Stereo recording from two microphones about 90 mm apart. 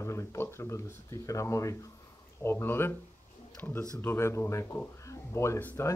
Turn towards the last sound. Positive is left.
turn(degrees=25)  # may be behind; listen again after turning